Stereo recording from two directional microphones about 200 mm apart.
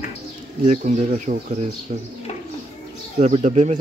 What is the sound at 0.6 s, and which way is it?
Speech, 40° right (ahead or behind).